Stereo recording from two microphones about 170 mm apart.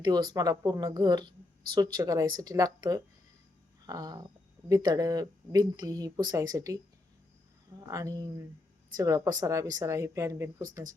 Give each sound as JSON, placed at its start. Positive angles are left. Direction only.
{"t": 0.0, "sound": "speech", "side_deg": -25}
{"t": 7.9, "sound": "speech", "side_deg": -20}